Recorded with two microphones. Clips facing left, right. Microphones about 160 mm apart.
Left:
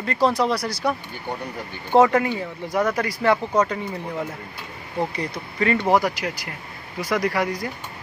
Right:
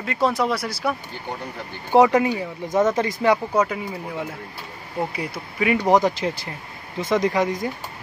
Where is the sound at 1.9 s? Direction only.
15° right (ahead or behind).